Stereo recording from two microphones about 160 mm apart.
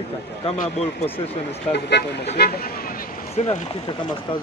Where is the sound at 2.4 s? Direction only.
70° left (ahead or behind).